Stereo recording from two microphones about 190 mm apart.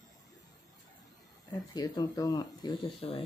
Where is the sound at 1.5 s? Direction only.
20° left (ahead or behind).